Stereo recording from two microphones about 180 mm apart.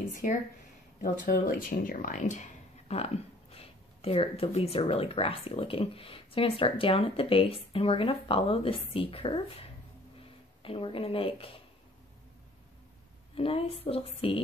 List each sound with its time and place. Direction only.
0.1 s speech: 45° left (ahead or behind); by 11.5 s 30° left (ahead or behind)
13.3 s speech: 30° left (ahead or behind)